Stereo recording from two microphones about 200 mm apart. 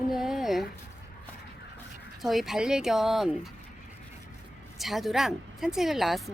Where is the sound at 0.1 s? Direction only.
Centre (ahead or behind).